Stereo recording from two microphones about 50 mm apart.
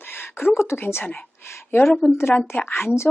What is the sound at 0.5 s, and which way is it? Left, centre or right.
Speech, left.